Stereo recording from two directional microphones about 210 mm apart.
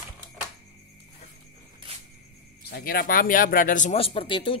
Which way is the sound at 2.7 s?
45° left (ahead or behind).